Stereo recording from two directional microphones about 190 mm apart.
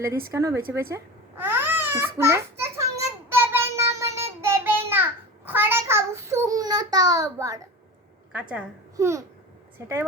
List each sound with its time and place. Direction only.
0.3 s a child's voice: 15° right (ahead or behind)
0.7 s babbling: 10° right (ahead or behind)
2.1 s child singing: 15° right (ahead or behind)
8.3 s a child's voice: 5° right (ahead or behind)